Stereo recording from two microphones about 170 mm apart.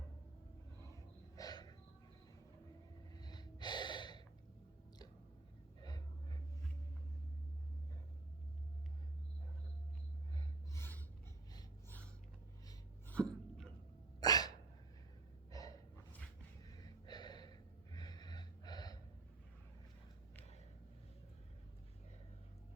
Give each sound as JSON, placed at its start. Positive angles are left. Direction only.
{"t": 1.4, "sound": "a sound", "side_deg": 20}
{"t": 3.2, "sound": "gasp", "side_deg": 25}
{"t": 10.3, "sound": "gasp", "side_deg": 15}
{"t": 13.1, "sound": "hiccup", "side_deg": 5}
{"t": 14.2, "sound": "hiccup", "side_deg": 25}
{"t": 15.5, "sound": "gasp", "side_deg": 20}